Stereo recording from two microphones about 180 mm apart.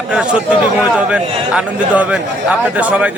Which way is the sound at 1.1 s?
5° right (ahead or behind).